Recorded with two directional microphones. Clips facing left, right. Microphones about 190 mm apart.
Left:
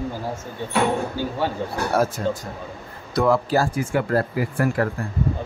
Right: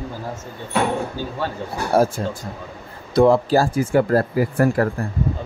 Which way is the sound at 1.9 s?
30° right (ahead or behind).